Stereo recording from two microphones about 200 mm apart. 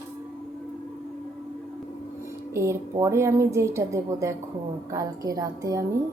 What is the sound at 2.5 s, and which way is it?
A woman's voice, 15° right (ahead or behind).